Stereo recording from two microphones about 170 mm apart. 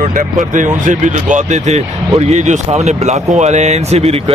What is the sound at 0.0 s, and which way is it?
Speech, 50° right (ahead or behind).